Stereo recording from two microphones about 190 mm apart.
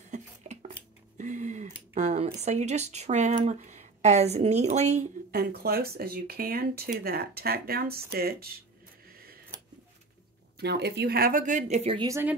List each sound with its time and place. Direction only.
0.1 s a sound: 40° right (ahead or behind)
2.0 s speech: 35° right (ahead or behind)
5.3 s speech: 55° right (ahead or behind)
10.6 s speech: 60° right (ahead or behind); by 12.1 s 30° right (ahead or behind)
12.1 s speech: 10° right (ahead or behind)